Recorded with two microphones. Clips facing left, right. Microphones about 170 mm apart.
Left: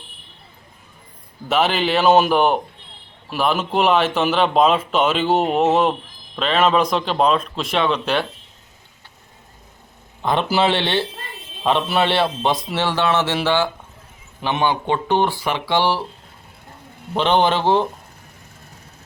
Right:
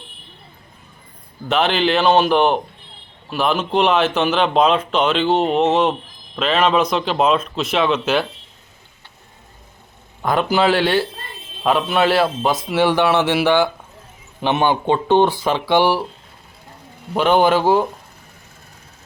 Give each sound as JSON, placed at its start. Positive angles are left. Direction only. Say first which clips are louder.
{"t": 1.5, "sound": "speech", "louder": "right 1 dB", "side_deg": 0}
{"t": 10.2, "sound": "speech", "louder": "right 2 dB", "side_deg": 0}
{"t": 12.8, "sound": "speech", "louder": "right 5 dB", "side_deg": -15}
{"t": 17.2, "sound": "speech", "louder": "right 3 dB", "side_deg": -5}